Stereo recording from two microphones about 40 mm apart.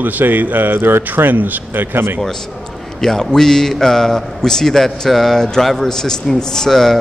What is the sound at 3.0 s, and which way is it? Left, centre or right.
A man's voice, centre.